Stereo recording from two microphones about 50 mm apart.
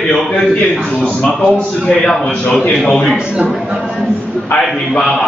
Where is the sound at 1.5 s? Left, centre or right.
Centre.